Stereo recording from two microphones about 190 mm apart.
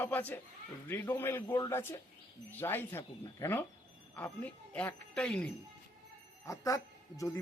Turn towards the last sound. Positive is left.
turn(degrees=15)  # may be behind; listen again after turning